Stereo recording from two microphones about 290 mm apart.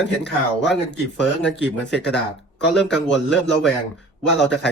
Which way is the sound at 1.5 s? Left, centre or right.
Left.